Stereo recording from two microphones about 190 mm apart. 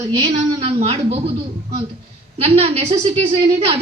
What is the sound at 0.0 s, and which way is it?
A woman's voice, 25° right (ahead or behind).